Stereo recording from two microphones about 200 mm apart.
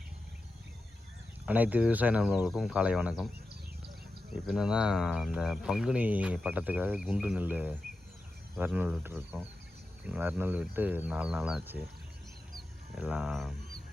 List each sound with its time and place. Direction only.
1.5 s speech: 10° right (ahead or behind)
4.4 s speech: 5° right (ahead or behind)
13.0 s speech: 5° right (ahead or behind)